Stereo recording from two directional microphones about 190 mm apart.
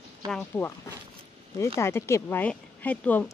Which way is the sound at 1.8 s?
15° left (ahead or behind).